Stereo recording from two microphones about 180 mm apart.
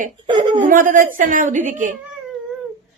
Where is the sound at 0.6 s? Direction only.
45° right (ahead or behind).